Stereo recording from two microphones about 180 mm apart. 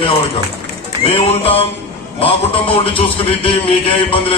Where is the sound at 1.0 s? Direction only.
35° left (ahead or behind).